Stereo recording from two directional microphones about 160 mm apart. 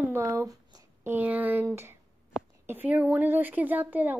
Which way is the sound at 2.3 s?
Centre (ahead or behind).